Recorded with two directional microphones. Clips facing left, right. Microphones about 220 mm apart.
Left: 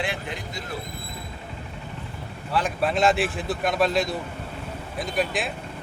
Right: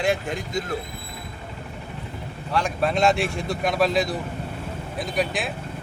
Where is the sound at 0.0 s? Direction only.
45° right (ahead or behind).